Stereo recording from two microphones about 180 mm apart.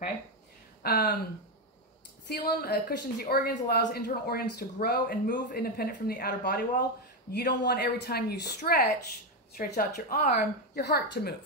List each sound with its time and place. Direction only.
0.8 s a woman's voice: 65° left (ahead or behind)
2.2 s a woman's voice: 65° left (ahead or behind)